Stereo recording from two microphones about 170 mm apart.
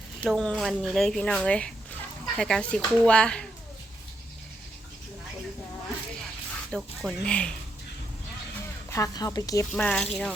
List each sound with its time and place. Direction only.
0.2 s speech: 5° left (ahead or behind)
6.7 s speech: centre (ahead or behind)
8.9 s speech: 20° left (ahead or behind)
9.7 s speech: 5° left (ahead or behind)